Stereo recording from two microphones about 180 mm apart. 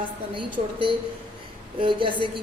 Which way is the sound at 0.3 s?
30° right (ahead or behind).